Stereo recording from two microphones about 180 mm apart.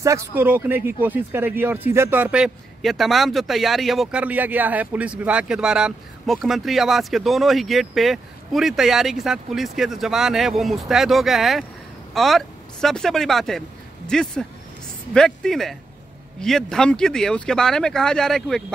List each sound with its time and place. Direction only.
0.0 s speech: 15° right (ahead or behind); by 18.6 s centre (ahead or behind)